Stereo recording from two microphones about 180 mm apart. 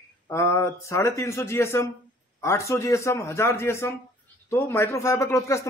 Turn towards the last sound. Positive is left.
turn(degrees=15)  # may be behind; listen again after turning